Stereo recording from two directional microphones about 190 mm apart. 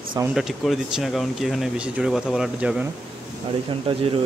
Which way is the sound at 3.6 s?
30° right (ahead or behind).